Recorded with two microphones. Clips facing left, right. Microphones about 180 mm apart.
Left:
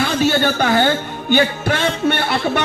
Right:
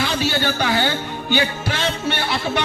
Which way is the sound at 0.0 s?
50° left (ahead or behind).